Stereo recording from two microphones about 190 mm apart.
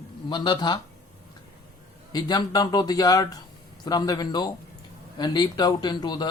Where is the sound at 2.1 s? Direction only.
20° left (ahead or behind).